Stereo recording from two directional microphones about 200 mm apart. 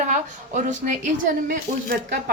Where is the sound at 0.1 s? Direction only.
35° right (ahead or behind).